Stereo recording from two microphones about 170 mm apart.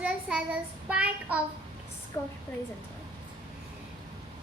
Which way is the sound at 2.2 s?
20° left (ahead or behind).